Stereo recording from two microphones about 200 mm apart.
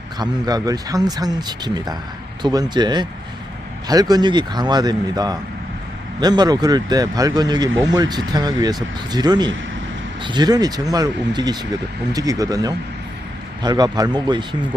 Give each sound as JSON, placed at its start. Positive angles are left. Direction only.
{"t": 0.2, "sound": "speech", "side_deg": -20}